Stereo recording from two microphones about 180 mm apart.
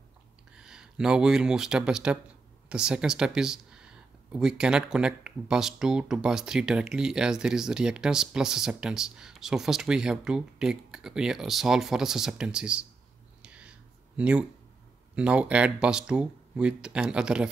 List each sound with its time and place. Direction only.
0.5 s speech: 5° right (ahead or behind)
13.4 s a sound: 5° right (ahead or behind)
15.1 s speech: 5° right (ahead or behind)